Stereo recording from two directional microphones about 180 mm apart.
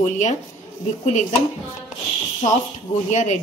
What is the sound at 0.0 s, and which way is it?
Speech, 40° left (ahead or behind).